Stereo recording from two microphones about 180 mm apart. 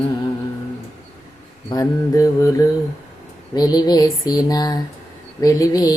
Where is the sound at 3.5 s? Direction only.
20° left (ahead or behind).